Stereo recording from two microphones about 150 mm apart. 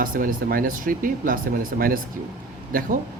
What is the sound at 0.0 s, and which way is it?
Speech, 70° right (ahead or behind).